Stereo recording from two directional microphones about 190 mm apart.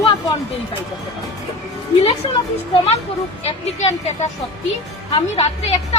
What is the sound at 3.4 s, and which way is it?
Speech, 35° left (ahead or behind).